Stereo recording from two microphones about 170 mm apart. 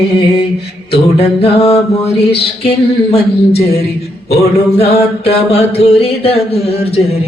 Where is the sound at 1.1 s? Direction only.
35° left (ahead or behind).